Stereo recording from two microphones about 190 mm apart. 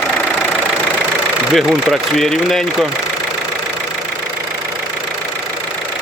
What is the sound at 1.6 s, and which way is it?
Speech, centre (ahead or behind).